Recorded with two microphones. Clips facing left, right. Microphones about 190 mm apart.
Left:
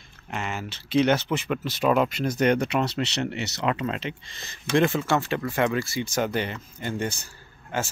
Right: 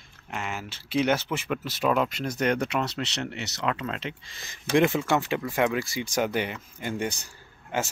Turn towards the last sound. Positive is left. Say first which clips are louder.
# even
turn(degrees=-20)  # may be behind; listen again after turning